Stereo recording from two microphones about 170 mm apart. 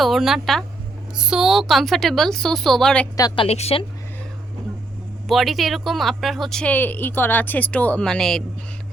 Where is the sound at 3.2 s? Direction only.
25° left (ahead or behind).